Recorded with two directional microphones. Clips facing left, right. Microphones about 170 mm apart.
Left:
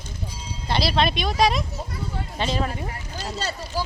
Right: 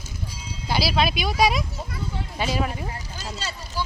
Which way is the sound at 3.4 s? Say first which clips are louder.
Left 7 dB; 40° left (ahead or behind).